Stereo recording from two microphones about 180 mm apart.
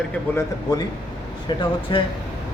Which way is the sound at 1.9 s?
25° left (ahead or behind).